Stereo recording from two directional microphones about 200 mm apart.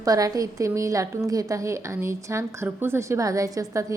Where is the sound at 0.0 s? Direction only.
20° right (ahead or behind).